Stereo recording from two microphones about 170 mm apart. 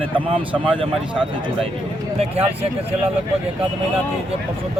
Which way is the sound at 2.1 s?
35° right (ahead or behind).